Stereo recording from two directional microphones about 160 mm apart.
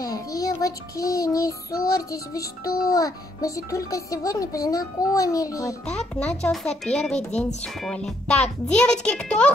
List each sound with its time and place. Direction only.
0.0 s a child's voice: 20° left (ahead or behind)
5.9 s a child's voice: 5° left (ahead or behind)